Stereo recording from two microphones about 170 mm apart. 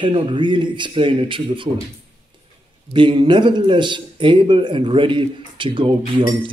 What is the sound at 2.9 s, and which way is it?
A man's voice, 25° right (ahead or behind).